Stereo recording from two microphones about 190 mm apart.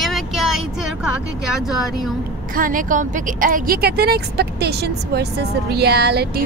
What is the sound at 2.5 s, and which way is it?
Speech, 45° right (ahead or behind).